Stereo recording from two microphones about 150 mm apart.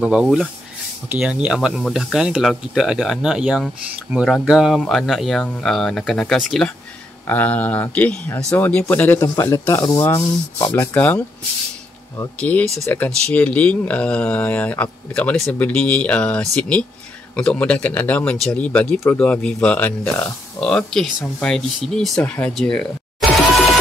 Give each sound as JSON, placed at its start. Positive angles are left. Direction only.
{"t": 0.0, "sound": "speech", "side_deg": -5}
{"t": 9.2, "sound": "speech", "side_deg": 25}
{"t": 12.4, "sound": "speech", "side_deg": 10}